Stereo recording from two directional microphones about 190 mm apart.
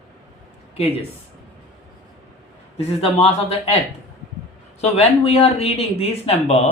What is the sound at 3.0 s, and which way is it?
Speech, 30° left (ahead or behind).